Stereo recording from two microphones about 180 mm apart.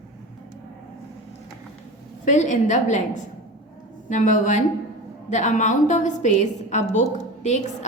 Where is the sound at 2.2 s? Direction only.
45° left (ahead or behind).